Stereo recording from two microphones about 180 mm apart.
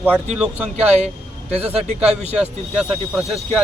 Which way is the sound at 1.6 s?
35° right (ahead or behind).